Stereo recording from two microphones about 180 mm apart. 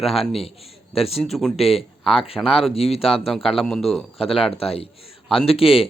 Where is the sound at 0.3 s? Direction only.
35° left (ahead or behind).